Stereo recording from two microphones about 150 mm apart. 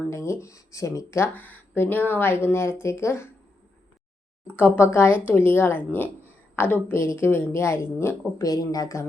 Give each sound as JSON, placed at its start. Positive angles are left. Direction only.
{"t": 0.1, "sound": "speech", "side_deg": 20}
{"t": 4.4, "sound": "speech", "side_deg": 10}